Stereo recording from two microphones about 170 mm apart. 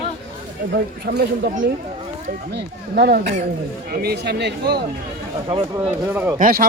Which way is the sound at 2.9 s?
65° right (ahead or behind).